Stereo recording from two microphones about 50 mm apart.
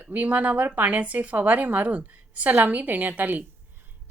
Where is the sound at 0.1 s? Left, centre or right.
Right.